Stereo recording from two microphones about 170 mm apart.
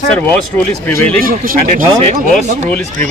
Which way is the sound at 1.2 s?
55° right (ahead or behind).